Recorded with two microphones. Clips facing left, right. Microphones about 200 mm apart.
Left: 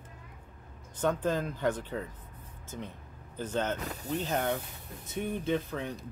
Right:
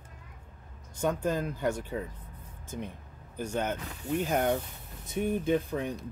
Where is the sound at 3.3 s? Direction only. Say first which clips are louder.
Even; 10° right (ahead or behind).